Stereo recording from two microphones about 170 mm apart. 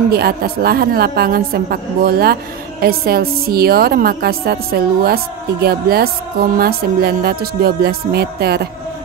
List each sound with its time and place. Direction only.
0.1 s a woman's voice: 65° right (ahead or behind)